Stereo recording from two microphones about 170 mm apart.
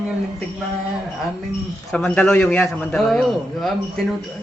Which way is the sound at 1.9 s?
5° left (ahead or behind).